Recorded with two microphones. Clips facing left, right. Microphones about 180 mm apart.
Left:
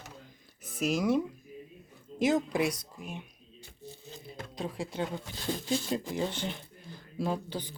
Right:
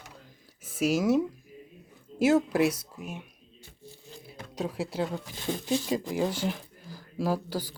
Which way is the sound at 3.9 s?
20° left (ahead or behind).